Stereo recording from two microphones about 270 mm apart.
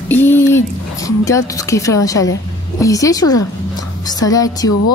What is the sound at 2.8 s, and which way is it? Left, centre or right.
A woman's voice, centre.